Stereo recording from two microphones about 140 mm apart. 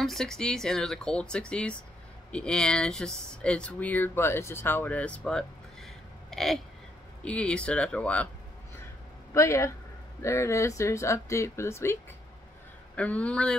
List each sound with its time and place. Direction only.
0.0 s speech: centre (ahead or behind)
6.3 s a sound: centre (ahead or behind)
7.2 s speech: 5° left (ahead or behind)
9.3 s speech: 20° left (ahead or behind)